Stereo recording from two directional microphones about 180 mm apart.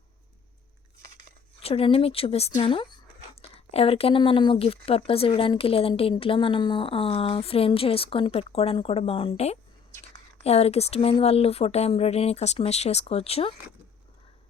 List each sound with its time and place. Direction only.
1.5 s speech: 35° left (ahead or behind)
10.4 s speech: 35° left (ahead or behind)